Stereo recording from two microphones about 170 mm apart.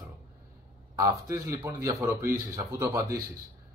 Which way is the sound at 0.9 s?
20° right (ahead or behind).